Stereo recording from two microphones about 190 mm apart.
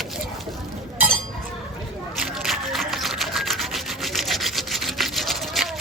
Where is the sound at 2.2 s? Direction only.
Centre (ahead or behind).